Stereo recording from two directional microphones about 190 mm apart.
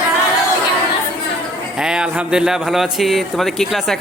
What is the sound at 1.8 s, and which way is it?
A man's voice, 5° right (ahead or behind).